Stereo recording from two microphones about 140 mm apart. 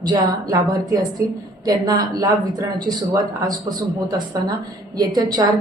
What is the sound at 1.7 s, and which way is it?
A woman's voice, 30° right (ahead or behind).